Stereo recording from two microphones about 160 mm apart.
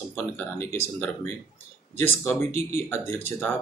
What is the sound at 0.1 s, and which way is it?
Speech, 15° left (ahead or behind).